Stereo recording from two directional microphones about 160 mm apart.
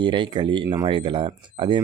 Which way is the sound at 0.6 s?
20° right (ahead or behind).